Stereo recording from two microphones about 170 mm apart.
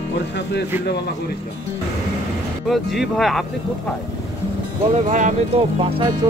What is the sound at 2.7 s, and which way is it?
Speech, centre (ahead or behind).